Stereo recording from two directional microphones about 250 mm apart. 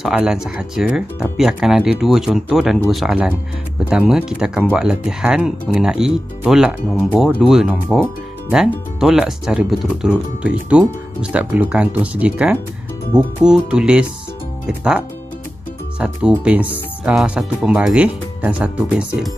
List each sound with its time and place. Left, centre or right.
0.0 s speech: centre